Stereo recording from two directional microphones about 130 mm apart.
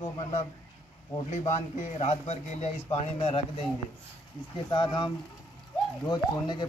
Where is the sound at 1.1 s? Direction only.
20° left (ahead or behind).